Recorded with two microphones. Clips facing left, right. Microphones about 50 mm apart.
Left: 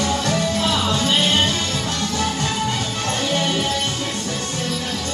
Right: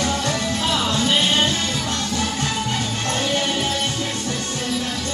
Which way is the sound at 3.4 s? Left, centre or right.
Centre.